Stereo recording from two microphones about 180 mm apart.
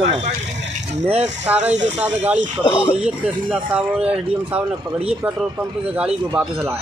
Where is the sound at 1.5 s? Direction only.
5° right (ahead or behind).